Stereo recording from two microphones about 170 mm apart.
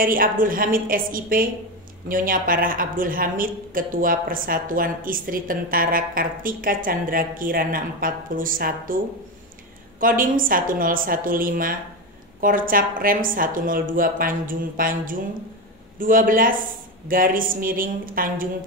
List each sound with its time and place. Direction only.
0.0 s a woman's voice: 55° right (ahead or behind)